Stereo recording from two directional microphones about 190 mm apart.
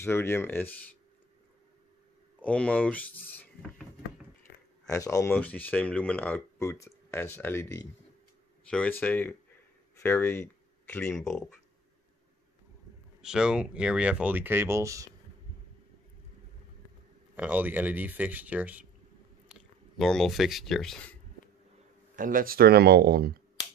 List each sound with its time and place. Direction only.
0.0 s speech: 10° left (ahead or behind)
2.4 s speech: 5° left (ahead or behind)
4.8 s speech: 15° left (ahead or behind)
8.6 s speech: 5° left (ahead or behind)
13.2 s speech: 5° right (ahead or behind)
17.4 s speech: 10° right (ahead or behind)
22.1 s speech: 45° right (ahead or behind)